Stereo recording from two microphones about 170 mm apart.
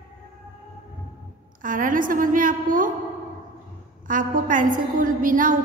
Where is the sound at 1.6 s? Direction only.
50° right (ahead or behind).